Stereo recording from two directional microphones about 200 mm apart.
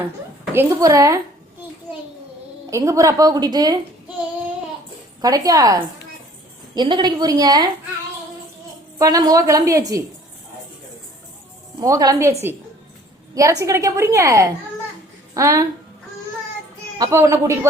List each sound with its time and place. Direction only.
0.5 s a woman's voice: 15° right (ahead or behind)
2.6 s a woman's voice: 15° right (ahead or behind)
5.2 s a woman's voice: 20° right (ahead or behind)
9.0 s a woman's voice: 20° right (ahead or behind)
11.8 s a woman's voice: 20° right (ahead or behind)
17.0 s a woman's voice: 15° right (ahead or behind)